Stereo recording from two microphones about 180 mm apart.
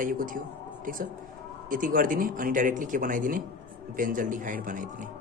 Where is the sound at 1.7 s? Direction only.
50° right (ahead or behind).